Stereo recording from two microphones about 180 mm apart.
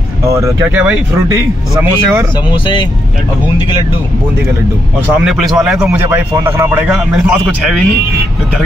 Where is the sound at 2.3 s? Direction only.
25° left (ahead or behind).